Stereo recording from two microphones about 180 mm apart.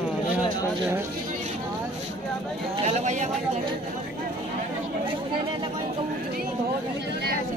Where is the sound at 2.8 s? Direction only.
40° right (ahead or behind).